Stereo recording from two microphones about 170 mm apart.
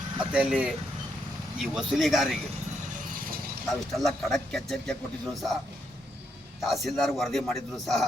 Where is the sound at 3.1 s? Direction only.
55° right (ahead or behind).